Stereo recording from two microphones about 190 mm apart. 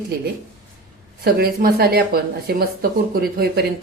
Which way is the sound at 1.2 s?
55° right (ahead or behind).